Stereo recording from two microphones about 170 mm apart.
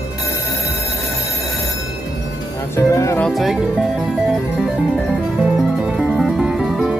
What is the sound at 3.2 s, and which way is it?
Speech, centre (ahead or behind).